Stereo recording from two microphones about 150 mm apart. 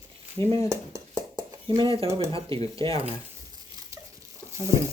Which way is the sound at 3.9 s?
20° right (ahead or behind).